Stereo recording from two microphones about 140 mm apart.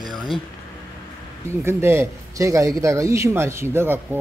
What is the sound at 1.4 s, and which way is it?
A man's voice, 20° right (ahead or behind).